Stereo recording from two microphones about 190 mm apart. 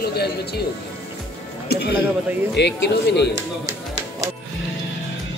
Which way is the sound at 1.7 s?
55° left (ahead or behind).